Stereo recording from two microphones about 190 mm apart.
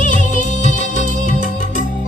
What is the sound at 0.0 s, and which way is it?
Music, 40° left (ahead or behind).